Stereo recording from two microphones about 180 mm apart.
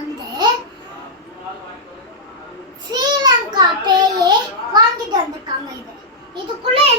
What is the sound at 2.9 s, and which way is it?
A child's voice, 20° right (ahead or behind).